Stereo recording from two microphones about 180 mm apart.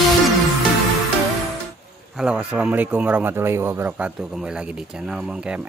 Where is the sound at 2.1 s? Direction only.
5° right (ahead or behind).